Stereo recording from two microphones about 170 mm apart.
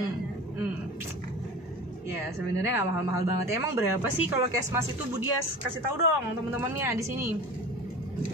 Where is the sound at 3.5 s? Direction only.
15° right (ahead or behind).